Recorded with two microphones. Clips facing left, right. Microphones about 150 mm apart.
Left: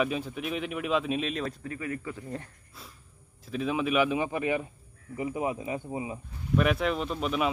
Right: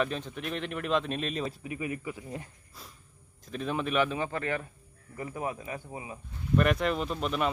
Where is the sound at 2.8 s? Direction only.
Centre (ahead or behind).